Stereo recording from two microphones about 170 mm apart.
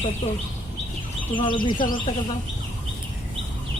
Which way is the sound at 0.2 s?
25° left (ahead or behind).